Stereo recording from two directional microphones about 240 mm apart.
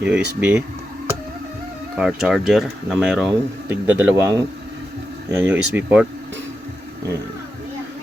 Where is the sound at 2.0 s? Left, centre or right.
Centre.